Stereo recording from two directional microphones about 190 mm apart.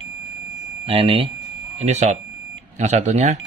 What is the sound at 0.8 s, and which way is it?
Speech, 30° right (ahead or behind).